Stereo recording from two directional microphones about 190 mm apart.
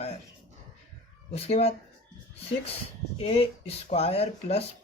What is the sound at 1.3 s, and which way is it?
Speech, 35° left (ahead or behind).